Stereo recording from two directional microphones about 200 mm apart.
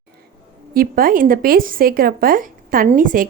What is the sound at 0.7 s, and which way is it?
A woman's voice, 45° right (ahead or behind).